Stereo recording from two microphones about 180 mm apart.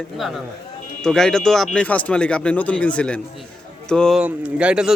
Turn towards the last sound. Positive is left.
turn(degrees=-5)  # may be behind; listen again after turning